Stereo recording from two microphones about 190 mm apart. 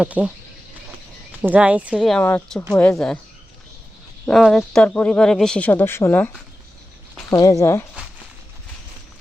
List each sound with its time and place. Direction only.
0.0 s speech: 10° right (ahead or behind)
1.4 s speech: 5° right (ahead or behind)
4.3 s speech: centre (ahead or behind)